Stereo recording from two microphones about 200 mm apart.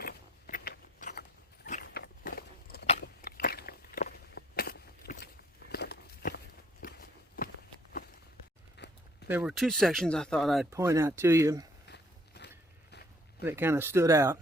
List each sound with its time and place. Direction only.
0.0 s biting: 50° left (ahead or behind)
1.8 s a sound: 50° left (ahead or behind)
2.8 s biting: 30° left (ahead or behind)
3.2 s walk: 50° left (ahead or behind)
8.8 s a sound: 55° left (ahead or behind)
9.2 s speech: 5° right (ahead or behind)
10.7 s speech: 15° right (ahead or behind)
11.9 s walk: 55° left (ahead or behind)
13.4 s speech: 10° right (ahead or behind)